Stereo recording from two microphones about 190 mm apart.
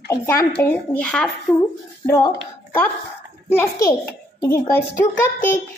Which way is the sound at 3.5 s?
15° left (ahead or behind).